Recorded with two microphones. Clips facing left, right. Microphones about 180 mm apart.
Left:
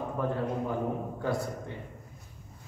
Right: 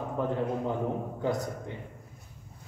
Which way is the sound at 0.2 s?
20° right (ahead or behind).